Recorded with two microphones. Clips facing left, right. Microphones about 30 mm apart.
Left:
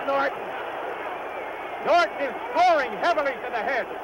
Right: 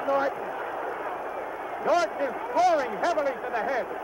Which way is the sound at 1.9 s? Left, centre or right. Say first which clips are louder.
Left 4 dB; left.